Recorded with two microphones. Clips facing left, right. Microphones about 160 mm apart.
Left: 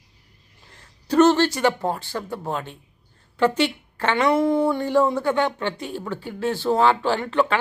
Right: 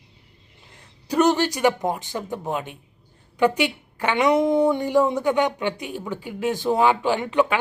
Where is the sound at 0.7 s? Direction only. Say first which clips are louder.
Left 4 dB; 15° right (ahead or behind).